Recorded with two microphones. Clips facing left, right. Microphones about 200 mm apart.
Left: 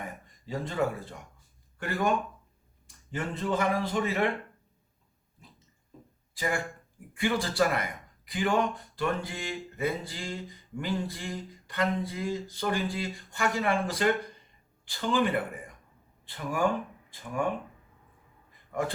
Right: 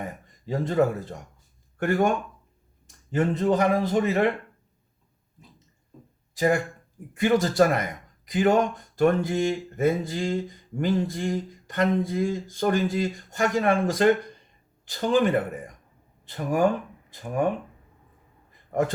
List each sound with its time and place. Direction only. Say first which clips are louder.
0.0 s speech: right 5 dB; 45° right (ahead or behind)
3.2 s speech: right 8 dB; 45° right (ahead or behind)
6.3 s speech: right 8 dB; 45° right (ahead or behind)